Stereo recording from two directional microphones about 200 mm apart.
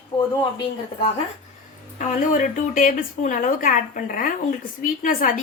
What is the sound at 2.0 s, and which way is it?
Speech, 40° left (ahead or behind).